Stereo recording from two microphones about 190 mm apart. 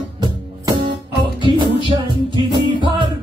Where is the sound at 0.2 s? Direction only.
25° right (ahead or behind).